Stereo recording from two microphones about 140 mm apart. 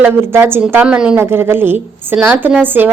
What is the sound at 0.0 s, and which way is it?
A woman's voice, 15° right (ahead or behind).